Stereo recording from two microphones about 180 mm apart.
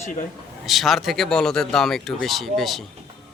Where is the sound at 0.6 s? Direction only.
Centre (ahead or behind).